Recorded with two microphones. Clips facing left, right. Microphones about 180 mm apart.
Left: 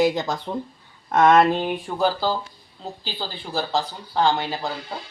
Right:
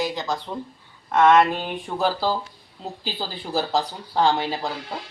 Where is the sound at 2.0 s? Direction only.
Centre (ahead or behind).